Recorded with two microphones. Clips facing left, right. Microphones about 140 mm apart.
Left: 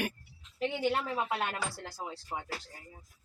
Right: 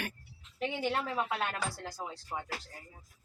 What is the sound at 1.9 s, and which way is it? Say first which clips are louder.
Speech: left 1 dB; 5° left (ahead or behind).